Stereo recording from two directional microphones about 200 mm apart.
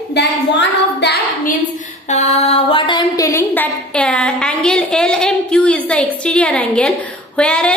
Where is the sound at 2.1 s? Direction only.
35° left (ahead or behind).